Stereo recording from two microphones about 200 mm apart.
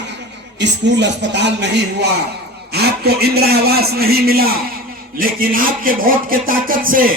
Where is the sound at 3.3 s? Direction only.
50° right (ahead or behind).